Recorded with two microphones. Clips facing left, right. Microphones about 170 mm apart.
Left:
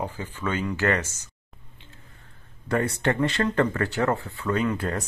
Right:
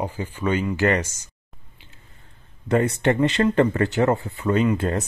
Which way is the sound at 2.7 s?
20° right (ahead or behind).